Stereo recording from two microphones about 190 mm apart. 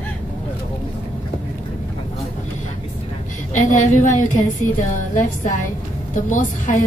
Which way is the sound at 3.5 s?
40° left (ahead or behind).